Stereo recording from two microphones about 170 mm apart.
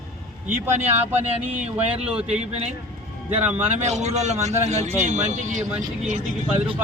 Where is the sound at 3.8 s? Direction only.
40° right (ahead or behind).